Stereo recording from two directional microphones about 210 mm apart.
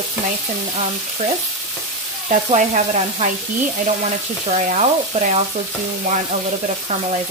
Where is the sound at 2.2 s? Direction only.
35° right (ahead or behind).